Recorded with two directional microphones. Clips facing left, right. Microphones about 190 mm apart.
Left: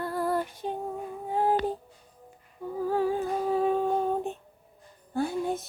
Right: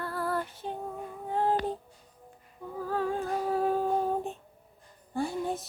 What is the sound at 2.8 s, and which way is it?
Humming, 10° left (ahead or behind).